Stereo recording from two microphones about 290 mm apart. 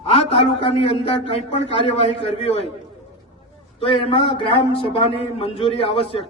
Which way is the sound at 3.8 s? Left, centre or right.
Centre.